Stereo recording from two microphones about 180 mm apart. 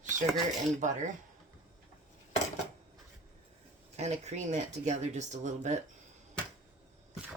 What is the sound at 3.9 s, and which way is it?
Speech, 40° right (ahead or behind).